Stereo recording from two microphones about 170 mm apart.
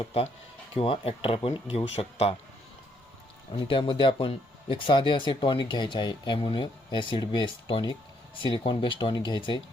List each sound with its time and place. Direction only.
0.0 s speech: 35° left (ahead or behind)
3.6 s speech: 30° left (ahead or behind)